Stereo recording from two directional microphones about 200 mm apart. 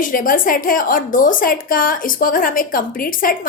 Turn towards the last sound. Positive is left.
turn(degrees=45)  # may be behind; listen again after turning